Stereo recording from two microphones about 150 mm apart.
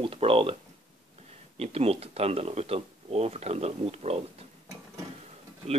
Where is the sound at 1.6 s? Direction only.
40° right (ahead or behind).